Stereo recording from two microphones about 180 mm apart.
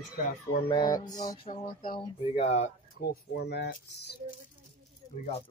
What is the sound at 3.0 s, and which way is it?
Speech, 65° left (ahead or behind).